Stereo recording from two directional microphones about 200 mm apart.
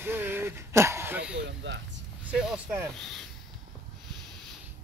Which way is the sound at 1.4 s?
65° right (ahead or behind).